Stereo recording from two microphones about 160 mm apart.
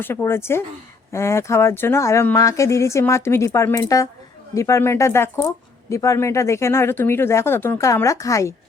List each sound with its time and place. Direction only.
0.0 s speech: 15° left (ahead or behind)